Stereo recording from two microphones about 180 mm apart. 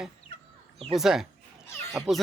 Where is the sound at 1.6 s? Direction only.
15° left (ahead or behind).